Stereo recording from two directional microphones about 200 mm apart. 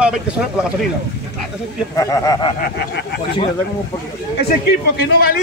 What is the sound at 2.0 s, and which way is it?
Speech, 15° left (ahead or behind).